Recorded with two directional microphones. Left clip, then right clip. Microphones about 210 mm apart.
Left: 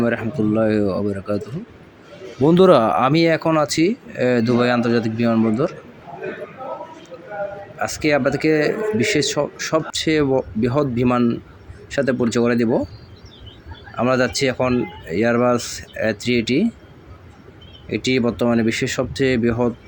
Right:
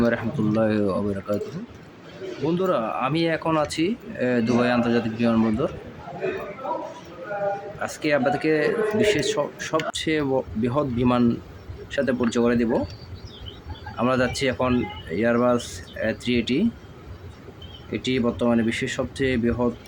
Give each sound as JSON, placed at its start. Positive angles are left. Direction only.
{"t": 0.0, "sound": "a man's voice", "side_deg": 10}
{"t": 2.5, "sound": "speech", "side_deg": 35}
{"t": 7.8, "sound": "a man's voice", "side_deg": 15}
{"t": 13.9, "sound": "a man's voice", "side_deg": 15}
{"t": 17.9, "sound": "speech", "side_deg": 20}